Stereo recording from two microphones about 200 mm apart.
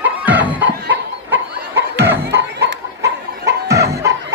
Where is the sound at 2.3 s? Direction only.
55° right (ahead or behind).